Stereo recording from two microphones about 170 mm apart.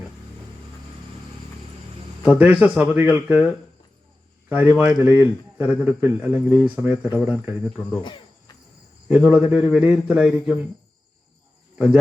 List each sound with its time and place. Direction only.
2.2 s speech: 10° right (ahead or behind)
8.0 s cricket: 25° left (ahead or behind)
9.0 s a man's voice: 5° right (ahead or behind)